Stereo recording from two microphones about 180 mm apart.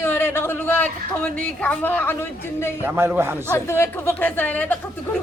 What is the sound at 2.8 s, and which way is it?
Speech, 15° right (ahead or behind).